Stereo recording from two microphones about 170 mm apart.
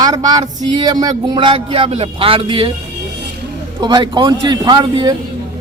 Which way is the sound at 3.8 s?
25° right (ahead or behind).